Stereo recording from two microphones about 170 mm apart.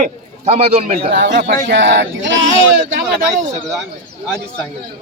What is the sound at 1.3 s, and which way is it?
Speech, 60° right (ahead or behind).